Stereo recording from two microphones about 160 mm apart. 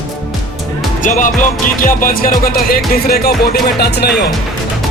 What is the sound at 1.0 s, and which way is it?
Music, 50° left (ahead or behind).